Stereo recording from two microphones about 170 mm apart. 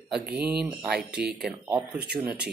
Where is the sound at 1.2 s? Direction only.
65° right (ahead or behind).